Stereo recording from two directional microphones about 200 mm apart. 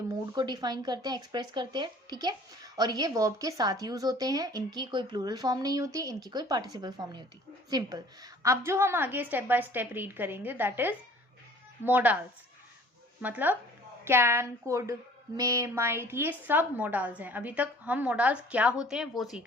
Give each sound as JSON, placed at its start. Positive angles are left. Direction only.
{"t": 0.1, "sound": "a woman's voice", "side_deg": -20}
{"t": 13.2, "sound": "a woman's voice", "side_deg": -10}